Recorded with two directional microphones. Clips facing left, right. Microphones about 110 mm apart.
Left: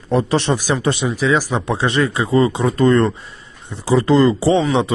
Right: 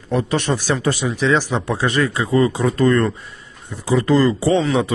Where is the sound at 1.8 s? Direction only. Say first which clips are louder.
Left 1 dB; 25° left (ahead or behind).